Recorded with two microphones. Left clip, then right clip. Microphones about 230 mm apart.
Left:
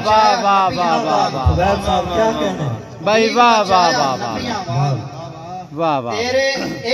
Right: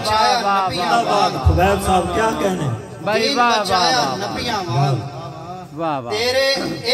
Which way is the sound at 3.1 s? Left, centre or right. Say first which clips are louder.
Left 4 dB; left.